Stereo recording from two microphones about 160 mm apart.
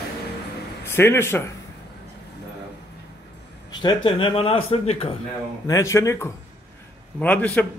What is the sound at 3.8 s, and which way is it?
Speech, 35° left (ahead or behind).